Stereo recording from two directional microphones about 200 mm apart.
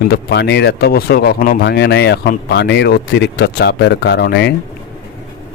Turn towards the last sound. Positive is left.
turn(degrees=55)  # may be behind; listen again after turning